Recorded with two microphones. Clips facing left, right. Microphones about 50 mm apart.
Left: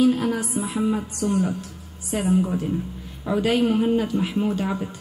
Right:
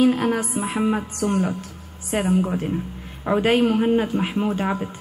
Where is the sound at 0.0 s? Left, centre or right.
Right.